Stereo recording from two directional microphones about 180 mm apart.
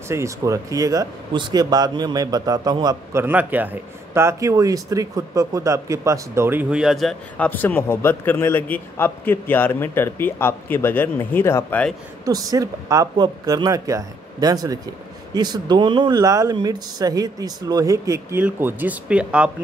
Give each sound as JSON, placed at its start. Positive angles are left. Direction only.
{"t": 0.1, "sound": "speech", "side_deg": -15}
{"t": 12.3, "sound": "speech", "side_deg": -20}